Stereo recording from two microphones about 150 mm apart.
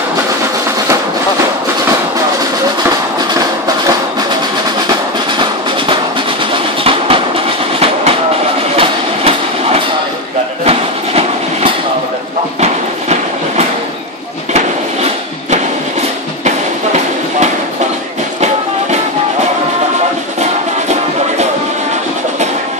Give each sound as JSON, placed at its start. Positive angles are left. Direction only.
{"t": 6.8, "sound": "music", "side_deg": -40}
{"t": 8.7, "sound": "train", "side_deg": -40}
{"t": 12.5, "sound": "a sound", "side_deg": -45}
{"t": 16.4, "sound": "music", "side_deg": -50}